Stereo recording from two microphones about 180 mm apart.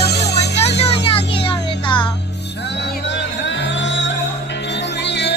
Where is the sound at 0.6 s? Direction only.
35° left (ahead or behind).